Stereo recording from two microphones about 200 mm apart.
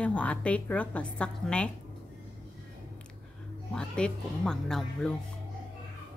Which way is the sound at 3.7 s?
5° left (ahead or behind).